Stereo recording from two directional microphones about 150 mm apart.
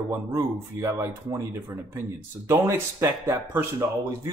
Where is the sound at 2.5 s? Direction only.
20° right (ahead or behind).